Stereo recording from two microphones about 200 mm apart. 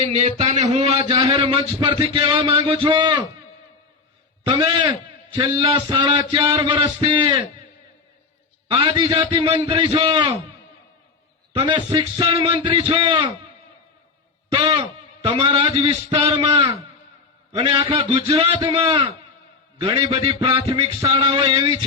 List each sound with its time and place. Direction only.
0.0 s a man's voice: 35° right (ahead or behind)
4.4 s a man's voice: 25° right (ahead or behind)
8.6 s a man's voice: 25° right (ahead or behind)
11.5 s a man's voice: 25° right (ahead or behind)
14.5 s a man's voice: 25° right (ahead or behind)